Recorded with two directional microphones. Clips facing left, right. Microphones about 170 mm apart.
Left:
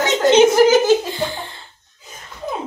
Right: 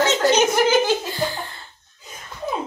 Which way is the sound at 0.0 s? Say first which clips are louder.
Left 5 dB; 20° left (ahead or behind).